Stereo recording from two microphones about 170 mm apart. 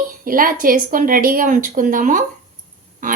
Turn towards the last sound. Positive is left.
turn(degrees=-50)  # may be behind; listen again after turning